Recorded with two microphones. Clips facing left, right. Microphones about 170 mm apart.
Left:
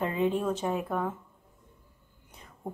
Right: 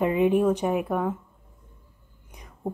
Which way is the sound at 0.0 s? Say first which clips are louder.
Right 7 dB; 15° right (ahead or behind).